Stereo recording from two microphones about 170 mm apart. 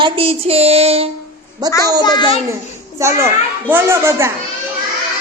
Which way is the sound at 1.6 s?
25° right (ahead or behind).